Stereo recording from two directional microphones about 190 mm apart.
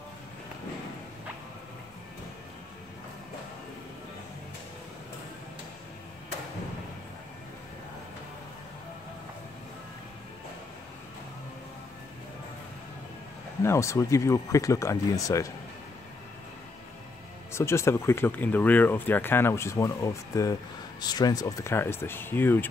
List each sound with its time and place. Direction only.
13.6 s speech: 15° left (ahead or behind)
17.5 s speech: 15° left (ahead or behind)